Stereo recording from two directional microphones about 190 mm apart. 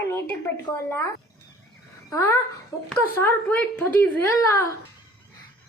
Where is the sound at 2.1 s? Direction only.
15° left (ahead or behind).